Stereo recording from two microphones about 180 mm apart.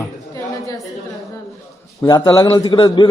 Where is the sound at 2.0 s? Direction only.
25° left (ahead or behind).